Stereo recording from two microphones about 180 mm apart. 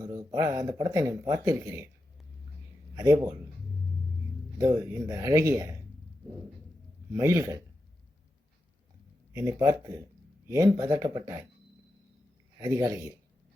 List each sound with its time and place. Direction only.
0.0 s speech: 20° right (ahead or behind)
2.9 s a man's voice: 20° right (ahead or behind)
4.5 s speech: 20° right (ahead or behind)
7.2 s speech: 15° right (ahead or behind)
9.3 s speech: 15° right (ahead or behind)
12.5 s speech: 20° right (ahead or behind)